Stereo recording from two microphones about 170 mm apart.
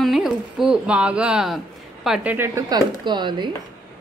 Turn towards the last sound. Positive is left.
turn(degrees=-25)  # may be behind; listen again after turning